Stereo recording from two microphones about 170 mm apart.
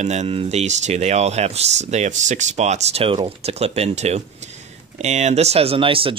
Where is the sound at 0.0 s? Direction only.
40° right (ahead or behind).